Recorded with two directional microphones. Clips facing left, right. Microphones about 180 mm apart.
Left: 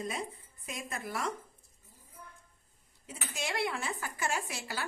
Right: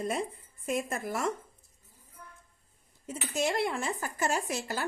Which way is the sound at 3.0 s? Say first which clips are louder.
Right 8 dB; 45° right (ahead or behind).